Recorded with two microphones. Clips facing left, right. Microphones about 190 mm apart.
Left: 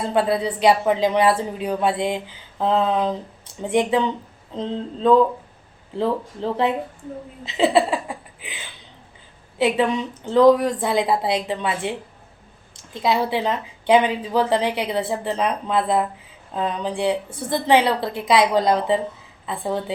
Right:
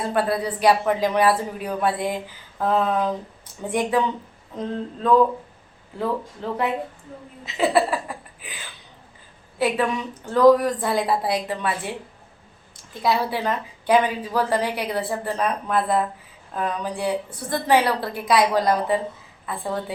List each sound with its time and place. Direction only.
0.1 s a woman's voice: 20° left (ahead or behind)
7.4 s a sound: 25° left (ahead or behind)
10.2 s a woman's voice: 20° left (ahead or behind)